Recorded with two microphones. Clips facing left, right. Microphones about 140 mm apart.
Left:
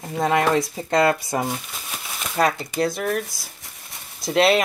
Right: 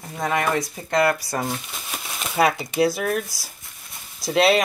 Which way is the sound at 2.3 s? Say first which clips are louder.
Right 1 dB; 5° right (ahead or behind).